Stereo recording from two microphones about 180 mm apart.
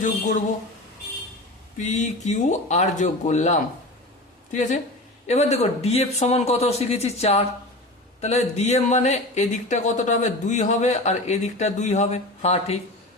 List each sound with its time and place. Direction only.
0.0 s speech: 45° left (ahead or behind)
1.8 s speech: 40° left (ahead or behind)
5.2 s speech: 35° left (ahead or behind)